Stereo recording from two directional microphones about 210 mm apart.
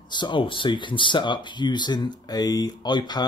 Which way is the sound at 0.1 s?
20° left (ahead or behind).